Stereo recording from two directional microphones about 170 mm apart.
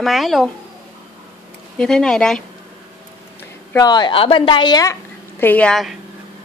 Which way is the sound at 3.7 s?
20° left (ahead or behind).